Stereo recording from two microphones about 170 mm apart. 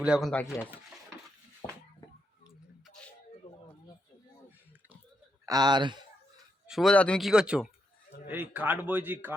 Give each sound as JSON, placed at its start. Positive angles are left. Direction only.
{"t": 0.0, "sound": "speech", "side_deg": 0}
{"t": 5.5, "sound": "speech", "side_deg": -25}
{"t": 6.7, "sound": "a man's voice", "side_deg": 0}